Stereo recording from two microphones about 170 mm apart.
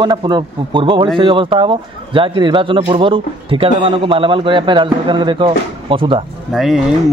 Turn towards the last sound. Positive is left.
turn(degrees=0)  # may be behind; listen again after turning